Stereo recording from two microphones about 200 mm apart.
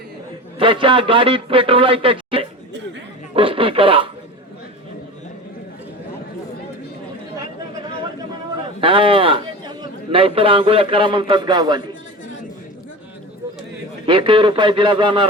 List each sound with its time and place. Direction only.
0.6 s a man's voice: 25° right (ahead or behind)
8.8 s a man's voice: 25° right (ahead or behind)
14.1 s speech: 25° right (ahead or behind)